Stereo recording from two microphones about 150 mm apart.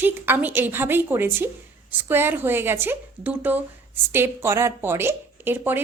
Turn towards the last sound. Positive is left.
turn(degrees=-15)  # may be behind; listen again after turning